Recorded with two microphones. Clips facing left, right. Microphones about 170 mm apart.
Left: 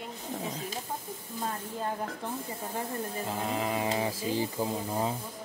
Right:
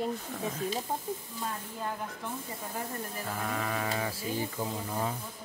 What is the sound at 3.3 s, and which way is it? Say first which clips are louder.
Speech: left 2 dB; 20° left (ahead or behind).